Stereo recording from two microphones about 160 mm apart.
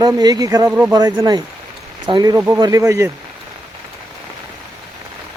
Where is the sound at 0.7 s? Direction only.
10° right (ahead or behind).